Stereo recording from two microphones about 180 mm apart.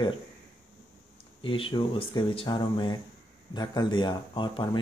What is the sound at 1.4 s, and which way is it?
Speech, 30° left (ahead or behind).